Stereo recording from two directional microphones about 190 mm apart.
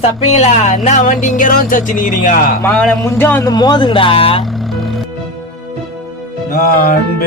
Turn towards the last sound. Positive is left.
turn(degrees=50)  # may be behind; listen again after turning